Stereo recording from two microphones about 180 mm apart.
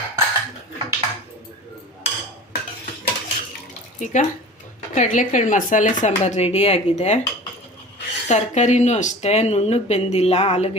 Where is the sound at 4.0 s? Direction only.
40° left (ahead or behind).